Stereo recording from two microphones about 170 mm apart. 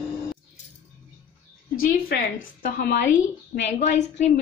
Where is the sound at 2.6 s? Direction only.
65° left (ahead or behind).